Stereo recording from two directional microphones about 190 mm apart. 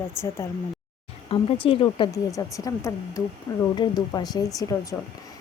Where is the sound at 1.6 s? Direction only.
25° left (ahead or behind).